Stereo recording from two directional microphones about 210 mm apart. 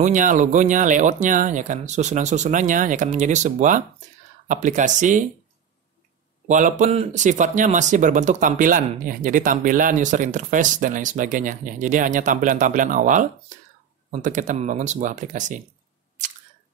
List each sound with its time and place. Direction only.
0.0 s speech: 35° right (ahead or behind)
6.4 s speech: 35° right (ahead or behind)